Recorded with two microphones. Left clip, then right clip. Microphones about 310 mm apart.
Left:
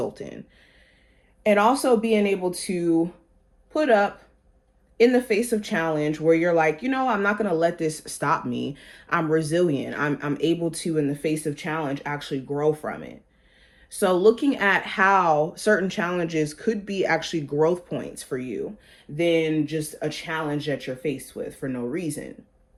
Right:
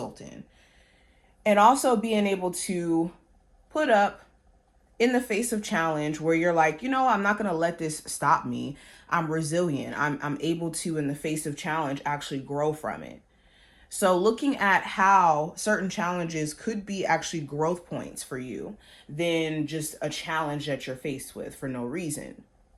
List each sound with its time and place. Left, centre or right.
0.0 s speech: centre
1.5 s speech: right
7.6 s speech: centre
11.1 s speech: right
14.5 s speech: centre
19.1 s speech: right